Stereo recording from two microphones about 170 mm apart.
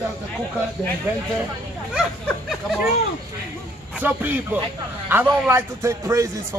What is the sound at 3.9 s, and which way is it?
A man's voice, 10° right (ahead or behind).